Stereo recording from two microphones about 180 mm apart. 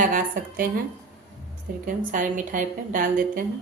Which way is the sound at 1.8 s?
45° right (ahead or behind).